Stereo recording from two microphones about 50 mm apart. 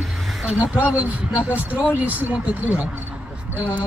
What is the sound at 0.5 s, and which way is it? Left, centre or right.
Speech, right.